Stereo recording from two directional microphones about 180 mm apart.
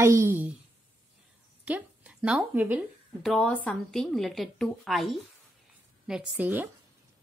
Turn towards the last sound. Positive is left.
turn(degrees=-10)  # may be behind; listen again after turning